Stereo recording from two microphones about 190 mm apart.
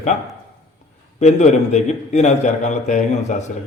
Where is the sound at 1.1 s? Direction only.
35° left (ahead or behind).